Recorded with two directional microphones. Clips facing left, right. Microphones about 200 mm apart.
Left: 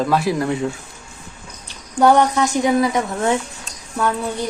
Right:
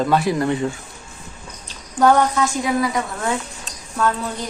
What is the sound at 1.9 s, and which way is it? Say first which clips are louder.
A woman's voice: left 2 dB; 15° left (ahead or behind).